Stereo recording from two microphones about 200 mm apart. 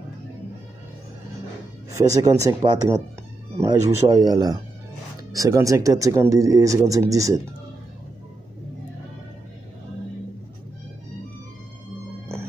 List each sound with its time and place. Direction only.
1.9 s speech: 15° right (ahead or behind)